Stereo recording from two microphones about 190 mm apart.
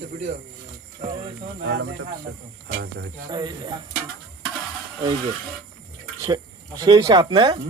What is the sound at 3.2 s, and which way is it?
Speech, 25° right (ahead or behind).